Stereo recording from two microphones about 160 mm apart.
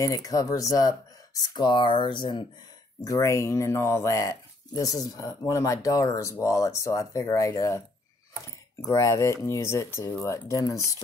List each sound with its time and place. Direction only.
0.0 s speech: 20° left (ahead or behind)
8.8 s speech: 20° left (ahead or behind)